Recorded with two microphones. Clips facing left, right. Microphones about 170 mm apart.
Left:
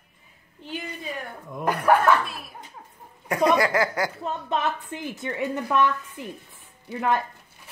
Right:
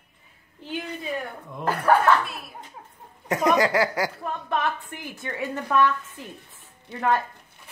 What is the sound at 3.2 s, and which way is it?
Speech, 20° right (ahead or behind).